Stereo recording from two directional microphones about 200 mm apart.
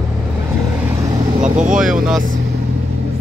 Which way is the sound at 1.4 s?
35° right (ahead or behind).